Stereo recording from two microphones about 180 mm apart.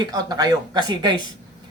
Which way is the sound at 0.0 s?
20° right (ahead or behind).